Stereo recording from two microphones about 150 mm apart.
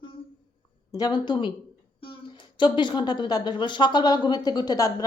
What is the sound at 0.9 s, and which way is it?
Speech, 25° left (ahead or behind).